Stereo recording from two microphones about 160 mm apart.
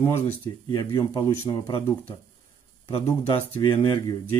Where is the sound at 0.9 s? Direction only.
30° left (ahead or behind).